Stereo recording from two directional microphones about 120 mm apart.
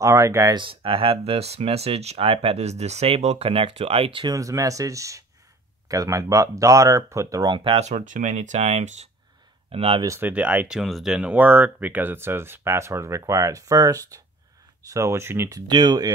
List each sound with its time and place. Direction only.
0.0 s speech: 25° right (ahead or behind)
0.6 s speech: 45° right (ahead or behind)
4.4 s speech: 25° right (ahead or behind)
7.5 s speech: 45° right (ahead or behind)
7.8 s speech: 80° right
9.7 s speech: 50° right (ahead or behind)
10.0 s speech: 20° right (ahead or behind)
10.8 s speech: centre (ahead or behind); by 16.1 s 35° right (ahead or behind)